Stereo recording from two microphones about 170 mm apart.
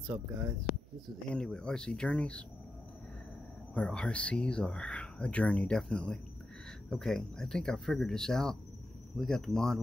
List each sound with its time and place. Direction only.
0.0 s speech: 25° right (ahead or behind)
1.3 s speech: 5° left (ahead or behind)
3.7 s speech: 5° left (ahead or behind)